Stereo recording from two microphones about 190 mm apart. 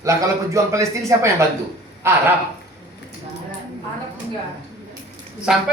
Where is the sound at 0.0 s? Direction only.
15° right (ahead or behind).